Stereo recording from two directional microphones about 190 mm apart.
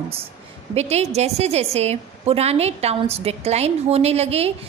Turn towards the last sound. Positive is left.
turn(degrees=-35)  # may be behind; listen again after turning